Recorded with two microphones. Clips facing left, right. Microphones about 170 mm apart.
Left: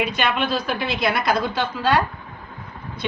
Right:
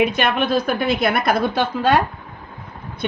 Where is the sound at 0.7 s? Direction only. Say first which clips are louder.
Right 4 dB; 50° right (ahead or behind).